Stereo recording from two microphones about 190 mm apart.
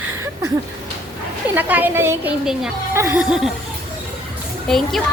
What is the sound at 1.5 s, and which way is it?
Speech, 10° right (ahead or behind).